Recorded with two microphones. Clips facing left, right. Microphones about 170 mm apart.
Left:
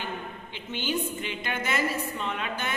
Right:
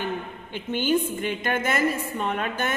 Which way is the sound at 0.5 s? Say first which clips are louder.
Right 8 dB; 50° right (ahead or behind).